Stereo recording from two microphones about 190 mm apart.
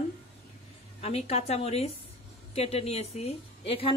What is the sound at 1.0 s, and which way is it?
A woman's voice, 35° left (ahead or behind).